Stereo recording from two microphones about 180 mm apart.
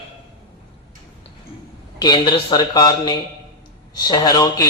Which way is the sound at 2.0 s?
25° left (ahead or behind).